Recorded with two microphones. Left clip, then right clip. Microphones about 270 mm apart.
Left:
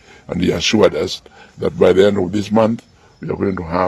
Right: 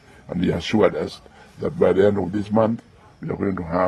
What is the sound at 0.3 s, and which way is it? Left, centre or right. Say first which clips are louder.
A man's voice: left 7 dB; left.